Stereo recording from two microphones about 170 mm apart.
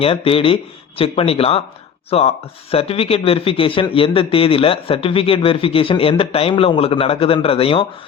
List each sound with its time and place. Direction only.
0.0 s a man's voice: 35° left (ahead or behind)